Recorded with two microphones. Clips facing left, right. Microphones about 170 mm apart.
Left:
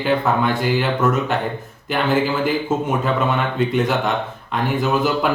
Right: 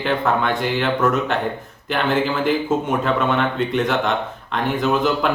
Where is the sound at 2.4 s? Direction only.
5° left (ahead or behind).